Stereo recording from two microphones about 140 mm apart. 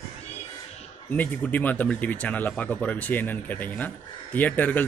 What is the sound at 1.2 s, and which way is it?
Speech, 10° left (ahead or behind).